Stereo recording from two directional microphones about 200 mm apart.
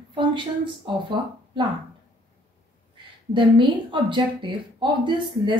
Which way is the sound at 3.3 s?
25° right (ahead or behind).